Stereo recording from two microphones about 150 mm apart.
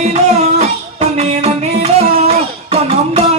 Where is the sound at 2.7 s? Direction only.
45° right (ahead or behind).